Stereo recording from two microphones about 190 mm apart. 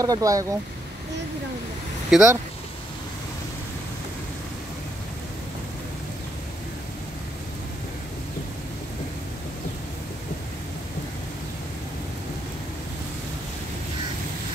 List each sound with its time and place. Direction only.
0.0 s speech: 20° right (ahead or behind)
2.0 s speech: 5° right (ahead or behind)